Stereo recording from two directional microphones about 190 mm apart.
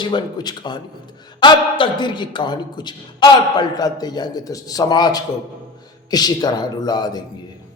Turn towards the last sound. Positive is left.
turn(degrees=20)  # may be behind; listen again after turning